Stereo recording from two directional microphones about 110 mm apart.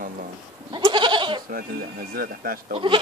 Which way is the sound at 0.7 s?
45° right (ahead or behind).